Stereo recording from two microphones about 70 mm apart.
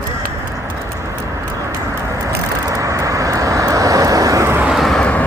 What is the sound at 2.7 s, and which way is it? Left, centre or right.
Vehicle, right.